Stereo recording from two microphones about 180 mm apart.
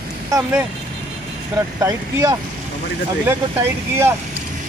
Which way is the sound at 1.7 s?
20° right (ahead or behind).